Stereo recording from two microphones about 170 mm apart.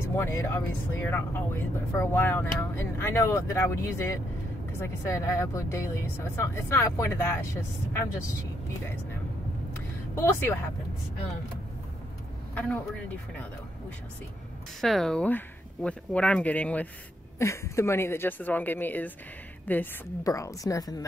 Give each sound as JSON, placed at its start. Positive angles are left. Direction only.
{"t": 0.1, "sound": "a woman's voice", "side_deg": 15}
{"t": 10.2, "sound": "a woman's voice", "side_deg": 15}
{"t": 12.5, "sound": "a woman's voice", "side_deg": 10}
{"t": 14.8, "sound": "a woman's voice", "side_deg": 0}